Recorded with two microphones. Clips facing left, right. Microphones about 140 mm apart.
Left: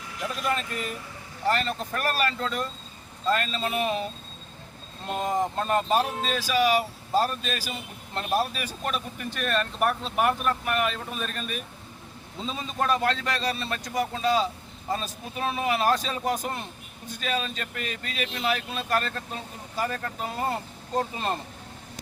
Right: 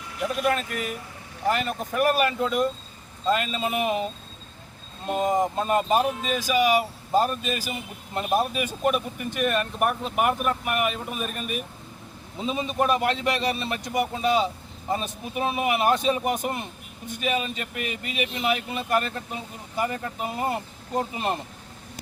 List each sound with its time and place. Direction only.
0.4 s a man's voice: 5° right (ahead or behind)